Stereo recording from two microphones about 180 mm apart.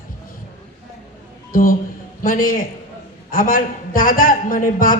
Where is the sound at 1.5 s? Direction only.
50° left (ahead or behind).